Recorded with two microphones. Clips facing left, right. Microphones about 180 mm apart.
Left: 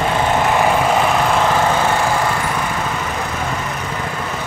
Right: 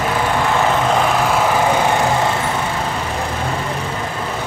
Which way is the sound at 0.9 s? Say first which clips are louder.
Even; centre (ahead or behind).